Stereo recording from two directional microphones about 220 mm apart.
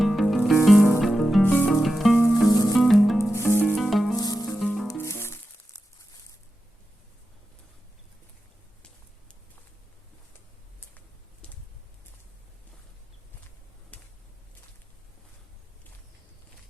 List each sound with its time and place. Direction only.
0.0 s music: centre (ahead or behind); by 2.7 s 15° left (ahead or behind)
2.7 s music: centre (ahead or behind)
4.2 s sizzle: 15° left (ahead or behind)
4.5 s music: 5° left (ahead or behind)
11.4 s a sound: 5° left (ahead or behind)
13.9 s a sound: 5° left (ahead or behind)